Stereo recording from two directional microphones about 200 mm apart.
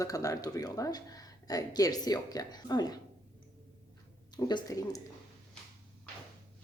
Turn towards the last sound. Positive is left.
turn(degrees=15)  # may be behind; listen again after turning